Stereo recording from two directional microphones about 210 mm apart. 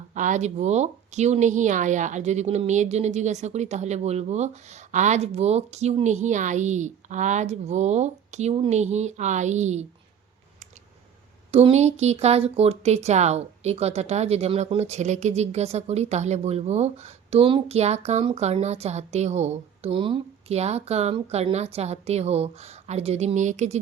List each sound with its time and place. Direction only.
0.1 s speech: 35° right (ahead or behind)
11.5 s speech: 30° right (ahead or behind)